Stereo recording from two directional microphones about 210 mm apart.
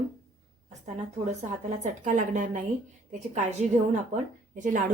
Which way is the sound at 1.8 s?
35° right (ahead or behind).